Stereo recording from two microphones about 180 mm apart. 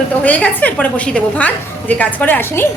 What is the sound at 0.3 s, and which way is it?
A woman's voice, 10° left (ahead or behind).